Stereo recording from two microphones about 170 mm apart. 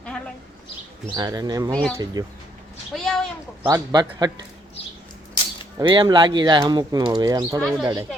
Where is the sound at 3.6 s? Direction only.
15° right (ahead or behind).